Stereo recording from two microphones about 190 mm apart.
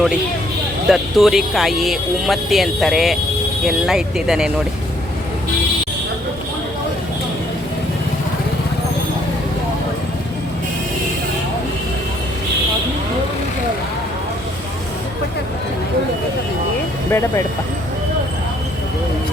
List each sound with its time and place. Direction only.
0.9 s speech: centre (ahead or behind)
17.1 s speech: 10° left (ahead or behind)